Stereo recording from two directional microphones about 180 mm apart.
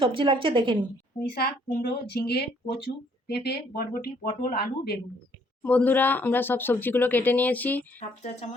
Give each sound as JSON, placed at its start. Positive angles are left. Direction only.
{"t": 0.0, "sound": "a woman's voice", "side_deg": -30}
{"t": 1.3, "sound": "speech", "side_deg": 60}
{"t": 5.6, "sound": "speech", "side_deg": 10}
{"t": 7.9, "sound": "speech", "side_deg": 40}